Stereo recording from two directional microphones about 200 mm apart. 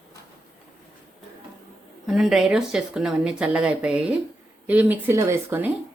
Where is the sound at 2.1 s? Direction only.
Centre (ahead or behind).